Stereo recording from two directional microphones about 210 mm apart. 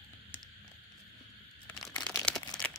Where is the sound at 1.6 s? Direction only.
5° left (ahead or behind).